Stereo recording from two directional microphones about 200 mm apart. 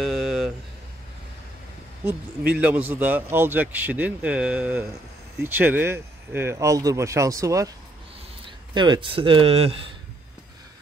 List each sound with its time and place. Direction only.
0.0 s a sound: centre (ahead or behind)
2.6 s speech: 10° right (ahead or behind)
8.7 s speech: 25° right (ahead or behind)